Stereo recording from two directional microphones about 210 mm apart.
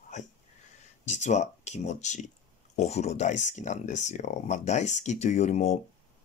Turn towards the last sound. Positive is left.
turn(degrees=30)  # may be behind; listen again after turning